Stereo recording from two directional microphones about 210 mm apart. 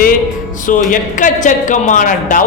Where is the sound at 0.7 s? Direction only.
40° left (ahead or behind).